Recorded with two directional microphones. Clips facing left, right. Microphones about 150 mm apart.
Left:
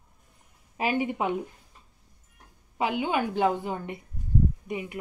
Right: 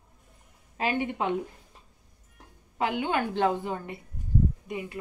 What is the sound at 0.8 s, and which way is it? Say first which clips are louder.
Speech: left 1 dB; 10° left (ahead or behind).